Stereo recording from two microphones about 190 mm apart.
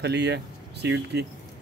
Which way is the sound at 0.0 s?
60° right (ahead or behind).